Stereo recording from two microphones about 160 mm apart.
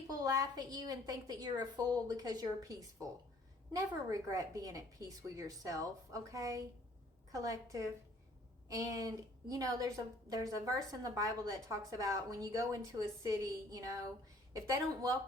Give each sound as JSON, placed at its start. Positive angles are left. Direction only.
{"t": 0.1, "sound": "a woman's voice", "side_deg": -25}